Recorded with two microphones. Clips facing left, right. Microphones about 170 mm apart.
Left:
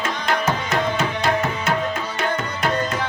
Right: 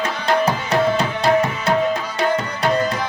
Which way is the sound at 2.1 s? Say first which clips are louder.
Right 4 dB; 35° right (ahead or behind).